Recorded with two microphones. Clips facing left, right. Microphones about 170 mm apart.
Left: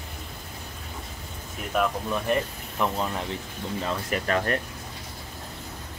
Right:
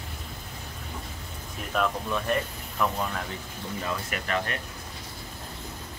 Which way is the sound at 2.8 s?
20° left (ahead or behind).